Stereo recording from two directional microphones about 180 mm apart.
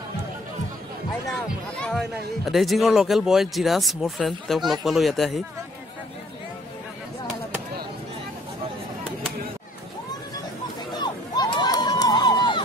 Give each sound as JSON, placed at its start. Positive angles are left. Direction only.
{"t": 2.4, "sound": "speech", "side_deg": 0}
{"t": 11.0, "sound": "crowd", "side_deg": 25}